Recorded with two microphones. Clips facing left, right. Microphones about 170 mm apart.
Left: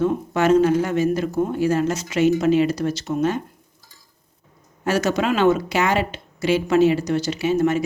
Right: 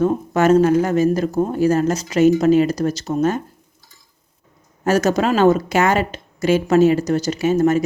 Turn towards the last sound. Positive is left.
turn(degrees=-40)  # may be behind; listen again after turning